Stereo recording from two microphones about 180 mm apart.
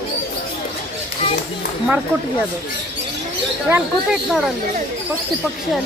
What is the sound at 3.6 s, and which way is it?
Speech, 10° right (ahead or behind).